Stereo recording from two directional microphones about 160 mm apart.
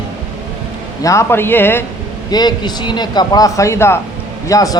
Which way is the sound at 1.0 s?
20° left (ahead or behind).